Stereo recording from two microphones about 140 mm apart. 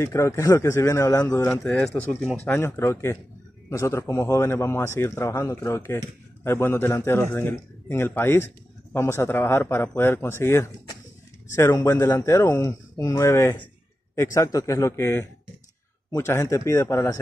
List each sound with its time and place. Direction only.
0.0 s a man's voice: 20° left (ahead or behind)
1.5 s speech: 5° left (ahead or behind)
2.4 s a man's voice: 15° left (ahead or behind)